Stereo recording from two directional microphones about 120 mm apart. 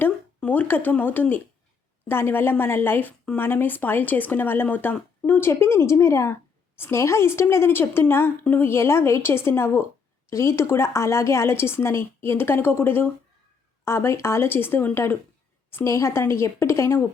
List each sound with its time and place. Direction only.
0.3 s a woman's voice: 15° left (ahead or behind)